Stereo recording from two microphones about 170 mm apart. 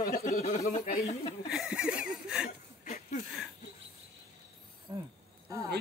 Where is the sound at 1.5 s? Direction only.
5° right (ahead or behind).